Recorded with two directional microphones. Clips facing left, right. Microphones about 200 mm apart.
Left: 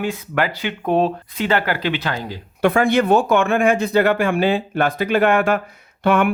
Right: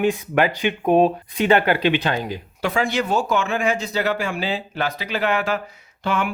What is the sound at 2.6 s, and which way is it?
Speech, 55° left (ahead or behind).